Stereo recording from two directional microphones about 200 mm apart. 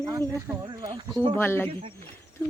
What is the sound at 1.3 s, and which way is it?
Speech, 10° left (ahead or behind).